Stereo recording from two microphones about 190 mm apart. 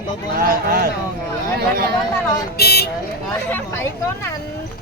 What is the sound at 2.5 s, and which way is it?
Speech, 55° left (ahead or behind).